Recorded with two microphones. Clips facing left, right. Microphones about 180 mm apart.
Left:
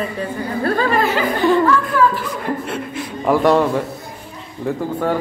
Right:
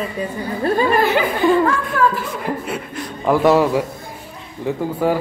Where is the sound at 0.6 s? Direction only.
20° right (ahead or behind).